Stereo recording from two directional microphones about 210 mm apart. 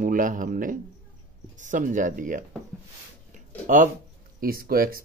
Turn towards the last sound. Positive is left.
turn(degrees=-45)  # may be behind; listen again after turning